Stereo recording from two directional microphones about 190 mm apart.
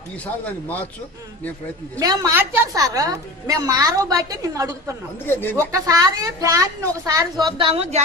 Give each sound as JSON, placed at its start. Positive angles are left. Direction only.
{"t": 0.2, "sound": "a man's voice", "side_deg": 10}
{"t": 2.0, "sound": "a woman's voice", "side_deg": -20}
{"t": 5.2, "sound": "a man's voice", "side_deg": 10}
{"t": 5.6, "sound": "a woman's voice", "side_deg": -15}